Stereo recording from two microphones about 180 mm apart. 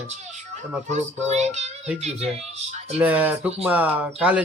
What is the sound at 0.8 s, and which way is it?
A child's voice, 40° right (ahead or behind).